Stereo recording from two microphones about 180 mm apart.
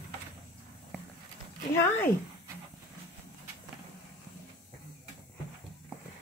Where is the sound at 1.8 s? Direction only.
15° left (ahead or behind).